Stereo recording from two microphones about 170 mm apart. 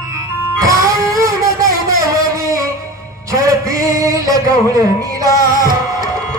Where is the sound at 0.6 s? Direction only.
20° right (ahead or behind).